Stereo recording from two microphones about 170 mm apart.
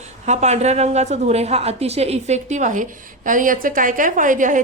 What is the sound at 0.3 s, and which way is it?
A woman's voice, 40° right (ahead or behind).